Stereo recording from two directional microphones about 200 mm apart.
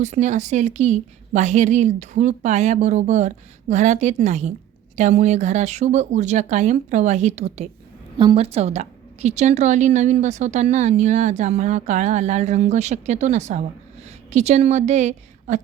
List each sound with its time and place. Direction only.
0.0 s a woman's voice: 35° right (ahead or behind)